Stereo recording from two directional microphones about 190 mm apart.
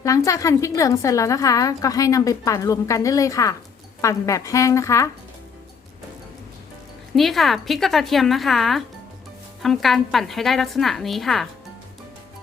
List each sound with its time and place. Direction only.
0.0 s a woman's voice: 15° left (ahead or behind)
7.2 s a woman's voice: centre (ahead or behind)